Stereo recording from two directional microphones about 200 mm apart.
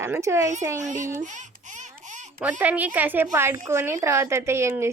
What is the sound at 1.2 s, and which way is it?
Baby laughter, 40° right (ahead or behind).